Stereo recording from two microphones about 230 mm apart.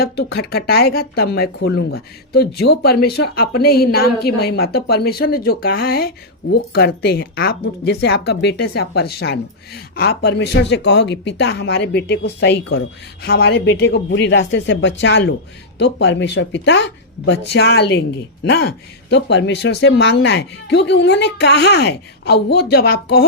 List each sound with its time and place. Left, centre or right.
0.0 s speech: left